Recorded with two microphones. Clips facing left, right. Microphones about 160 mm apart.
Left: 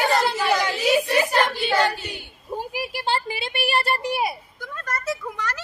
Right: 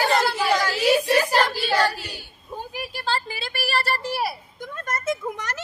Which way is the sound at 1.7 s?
25° left (ahead or behind).